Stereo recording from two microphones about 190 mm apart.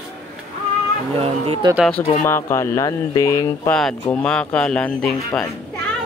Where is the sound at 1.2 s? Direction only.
30° right (ahead or behind).